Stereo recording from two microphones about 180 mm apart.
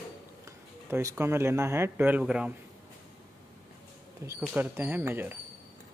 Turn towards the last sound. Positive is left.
turn(degrees=-10)  # may be behind; listen again after turning